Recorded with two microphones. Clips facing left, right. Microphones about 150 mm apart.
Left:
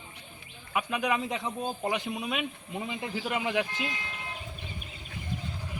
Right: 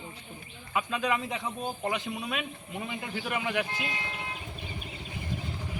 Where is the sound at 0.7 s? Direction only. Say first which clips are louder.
Even; 15° left (ahead or behind).